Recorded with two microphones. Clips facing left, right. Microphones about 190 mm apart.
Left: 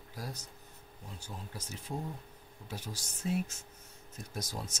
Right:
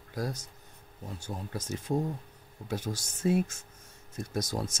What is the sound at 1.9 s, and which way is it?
Speech, 60° right (ahead or behind).